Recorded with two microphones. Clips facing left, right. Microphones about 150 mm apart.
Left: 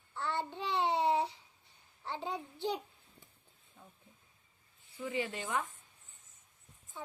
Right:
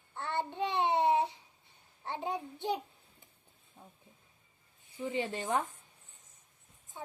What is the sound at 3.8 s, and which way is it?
Speech, 35° right (ahead or behind).